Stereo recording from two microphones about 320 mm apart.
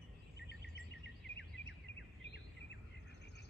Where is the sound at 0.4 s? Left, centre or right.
Left.